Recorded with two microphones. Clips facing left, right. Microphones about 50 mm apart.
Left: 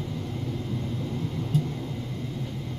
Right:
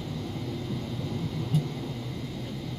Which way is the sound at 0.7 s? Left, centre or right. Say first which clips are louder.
Left 2 dB; centre.